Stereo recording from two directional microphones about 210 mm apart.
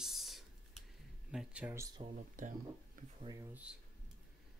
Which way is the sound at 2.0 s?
35° right (ahead or behind).